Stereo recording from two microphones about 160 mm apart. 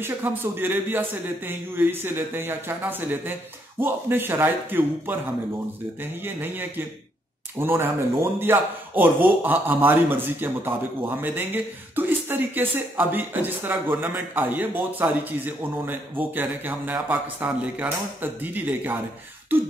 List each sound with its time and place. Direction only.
0.0 s speech: 15° right (ahead or behind)
6.2 s speech: 15° right (ahead or behind)